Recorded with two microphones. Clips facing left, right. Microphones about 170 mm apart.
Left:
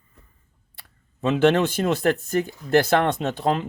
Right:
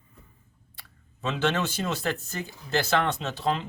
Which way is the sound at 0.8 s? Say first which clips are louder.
Left 8 dB; 55° left (ahead or behind).